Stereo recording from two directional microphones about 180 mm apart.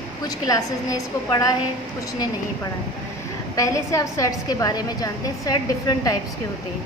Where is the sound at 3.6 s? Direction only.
15° left (ahead or behind).